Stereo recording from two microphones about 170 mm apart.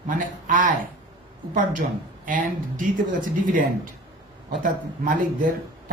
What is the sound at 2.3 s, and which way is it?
Speech, 50° right (ahead or behind).